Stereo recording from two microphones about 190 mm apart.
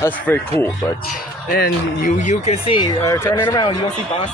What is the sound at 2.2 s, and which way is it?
Speech, 35° left (ahead or behind).